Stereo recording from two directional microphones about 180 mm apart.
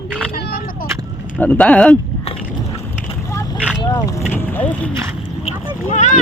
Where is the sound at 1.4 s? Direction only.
10° left (ahead or behind).